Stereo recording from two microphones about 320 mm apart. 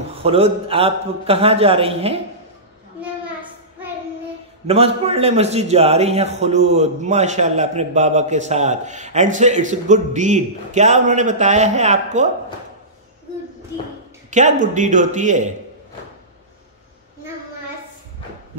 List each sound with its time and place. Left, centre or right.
0.2 s a man's voice: centre
4.6 s a man's voice: centre
14.3 s a man's voice: right